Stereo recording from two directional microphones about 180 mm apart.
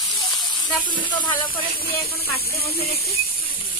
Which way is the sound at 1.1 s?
25° left (ahead or behind).